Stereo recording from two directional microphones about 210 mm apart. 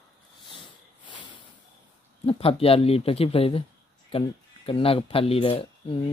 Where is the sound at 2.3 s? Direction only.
25° left (ahead or behind).